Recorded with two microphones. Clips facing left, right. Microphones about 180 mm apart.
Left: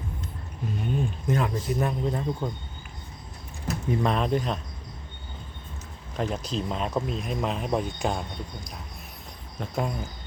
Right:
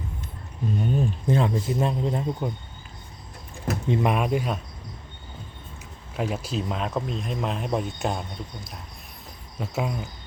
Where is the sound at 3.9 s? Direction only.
15° right (ahead or behind).